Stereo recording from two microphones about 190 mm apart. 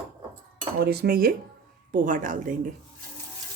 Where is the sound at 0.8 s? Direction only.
55° right (ahead or behind).